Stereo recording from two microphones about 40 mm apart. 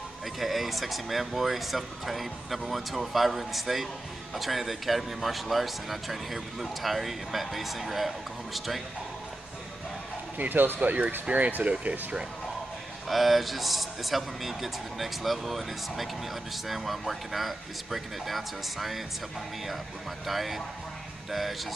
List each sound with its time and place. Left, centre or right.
0.4 s speech: centre
10.3 s speech: right
10.8 s speech: right
13.1 s speech: centre
20.2 s speech: centre